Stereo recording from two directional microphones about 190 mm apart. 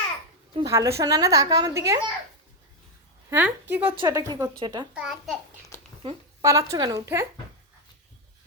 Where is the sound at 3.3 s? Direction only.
10° right (ahead or behind).